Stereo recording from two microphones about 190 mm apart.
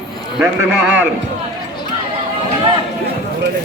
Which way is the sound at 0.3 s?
10° right (ahead or behind).